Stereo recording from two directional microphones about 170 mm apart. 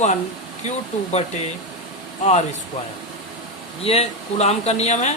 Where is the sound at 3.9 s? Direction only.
35° left (ahead or behind).